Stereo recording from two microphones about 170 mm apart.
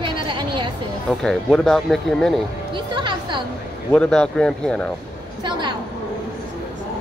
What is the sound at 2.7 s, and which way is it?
Music, 30° right (ahead or behind).